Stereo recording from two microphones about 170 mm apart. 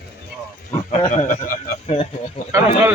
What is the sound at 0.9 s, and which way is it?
Speech, 40° left (ahead or behind).